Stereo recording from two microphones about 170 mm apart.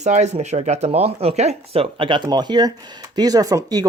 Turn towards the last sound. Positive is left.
turn(degrees=-20)  # may be behind; listen again after turning